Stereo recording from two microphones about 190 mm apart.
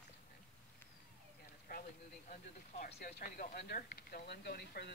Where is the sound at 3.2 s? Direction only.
45° left (ahead or behind).